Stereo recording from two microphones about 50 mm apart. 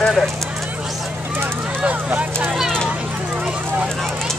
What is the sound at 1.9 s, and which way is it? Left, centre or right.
Speech, right.